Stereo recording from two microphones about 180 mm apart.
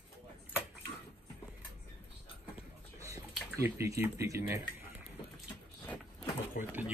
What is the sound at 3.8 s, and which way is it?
Speech, 15° right (ahead or behind).